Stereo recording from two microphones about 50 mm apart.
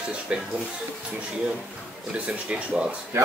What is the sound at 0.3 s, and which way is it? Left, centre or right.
Speech, right.